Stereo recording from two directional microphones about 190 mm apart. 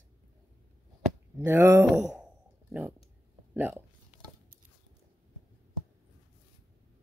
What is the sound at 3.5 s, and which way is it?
Speech, 10° right (ahead or behind).